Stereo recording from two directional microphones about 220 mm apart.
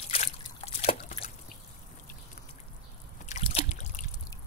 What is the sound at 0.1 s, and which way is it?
Trickle, 30° left (ahead or behind).